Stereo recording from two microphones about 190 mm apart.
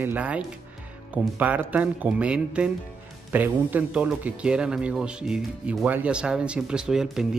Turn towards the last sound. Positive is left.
turn(degrees=-5)  # may be behind; listen again after turning